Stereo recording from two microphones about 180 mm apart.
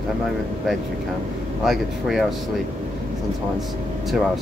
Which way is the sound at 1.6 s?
Centre (ahead or behind).